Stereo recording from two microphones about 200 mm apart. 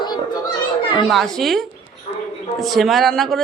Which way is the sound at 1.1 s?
Centre (ahead or behind).